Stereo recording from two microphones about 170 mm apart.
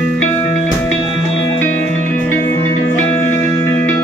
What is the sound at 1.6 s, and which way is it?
Music, 10° left (ahead or behind).